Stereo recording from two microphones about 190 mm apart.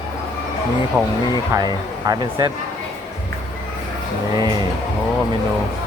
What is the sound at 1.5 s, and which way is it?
Speech, 20° right (ahead or behind).